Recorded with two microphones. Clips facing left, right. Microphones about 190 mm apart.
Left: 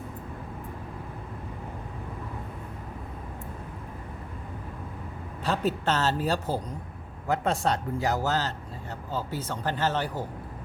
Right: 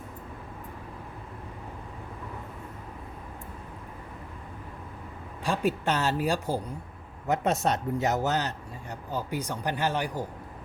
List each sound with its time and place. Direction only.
5.4 s speech: 15° right (ahead or behind)